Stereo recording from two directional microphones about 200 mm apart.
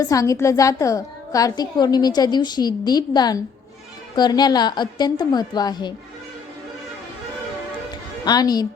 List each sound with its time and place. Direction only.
0.0 s a woman's voice: 15° left (ahead or behind)
8.2 s a woman's voice: 20° left (ahead or behind)